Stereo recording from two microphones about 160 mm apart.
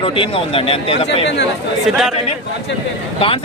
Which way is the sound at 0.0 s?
35° left (ahead or behind).